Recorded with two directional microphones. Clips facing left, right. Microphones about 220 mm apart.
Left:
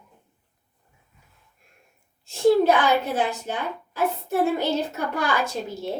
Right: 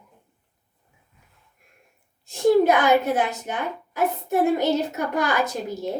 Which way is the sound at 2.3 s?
20° right (ahead or behind).